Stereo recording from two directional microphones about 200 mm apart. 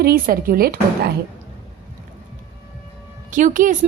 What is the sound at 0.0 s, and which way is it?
Speech, 45° right (ahead or behind).